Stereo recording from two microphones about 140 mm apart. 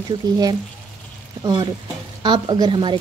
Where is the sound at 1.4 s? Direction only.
35° right (ahead or behind).